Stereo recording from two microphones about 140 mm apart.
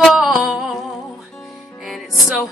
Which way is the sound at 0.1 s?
Centre (ahead or behind).